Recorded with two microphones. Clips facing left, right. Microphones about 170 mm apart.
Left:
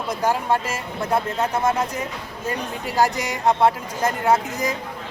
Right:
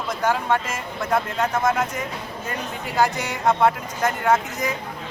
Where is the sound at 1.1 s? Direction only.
10° left (ahead or behind).